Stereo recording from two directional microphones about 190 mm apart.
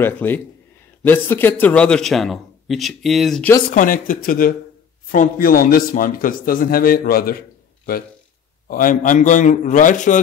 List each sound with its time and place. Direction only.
0.0 s a man's voice: 10° left (ahead or behind)
3.7 s a man's voice: 45° left (ahead or behind)